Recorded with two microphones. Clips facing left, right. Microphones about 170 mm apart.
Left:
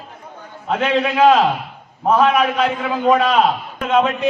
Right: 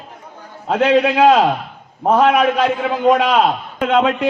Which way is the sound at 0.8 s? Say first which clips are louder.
Right 2 dB; 50° right (ahead or behind).